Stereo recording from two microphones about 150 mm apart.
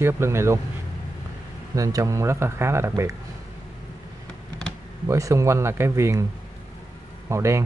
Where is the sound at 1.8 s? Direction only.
25° right (ahead or behind).